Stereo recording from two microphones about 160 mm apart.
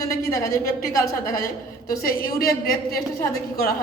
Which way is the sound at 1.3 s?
65° left (ahead or behind).